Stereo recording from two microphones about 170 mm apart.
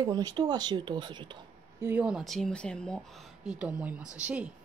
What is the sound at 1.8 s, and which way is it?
A woman's voice, 10° right (ahead or behind).